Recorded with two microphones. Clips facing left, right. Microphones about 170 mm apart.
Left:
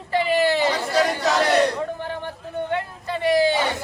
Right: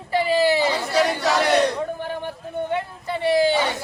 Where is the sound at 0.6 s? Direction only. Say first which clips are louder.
Even; 5° right (ahead or behind).